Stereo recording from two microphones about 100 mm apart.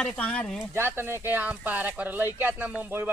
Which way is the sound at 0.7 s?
25° right (ahead or behind).